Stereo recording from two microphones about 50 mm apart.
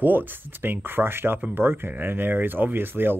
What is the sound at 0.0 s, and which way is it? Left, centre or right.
Speech, right.